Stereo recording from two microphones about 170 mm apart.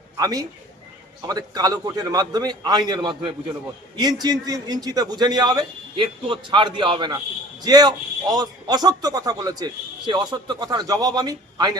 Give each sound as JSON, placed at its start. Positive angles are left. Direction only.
{"t": 0.2, "sound": "a man's voice", "side_deg": -20}